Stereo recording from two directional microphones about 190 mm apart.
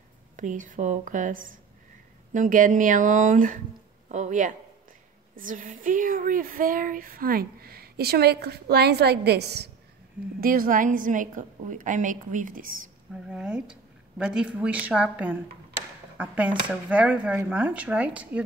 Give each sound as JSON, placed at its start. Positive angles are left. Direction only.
{"t": 0.4, "sound": "a man's voice", "side_deg": -45}
{"t": 10.4, "sound": "speech", "side_deg": -50}
{"t": 13.1, "sound": "speech", "side_deg": -5}